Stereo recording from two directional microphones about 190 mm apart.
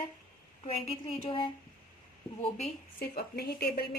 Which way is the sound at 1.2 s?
30° left (ahead or behind).